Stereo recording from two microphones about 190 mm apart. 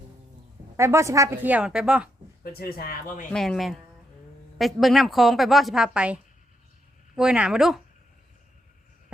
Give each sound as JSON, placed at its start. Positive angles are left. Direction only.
{"t": 0.8, "sound": "a woman's voice", "side_deg": -15}
{"t": 2.4, "sound": "speech", "side_deg": 55}
{"t": 3.3, "sound": "a woman's voice", "side_deg": 0}
{"t": 7.2, "sound": "a woman's voice", "side_deg": -5}